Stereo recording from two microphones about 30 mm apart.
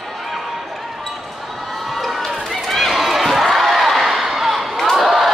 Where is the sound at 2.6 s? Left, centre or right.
Centre.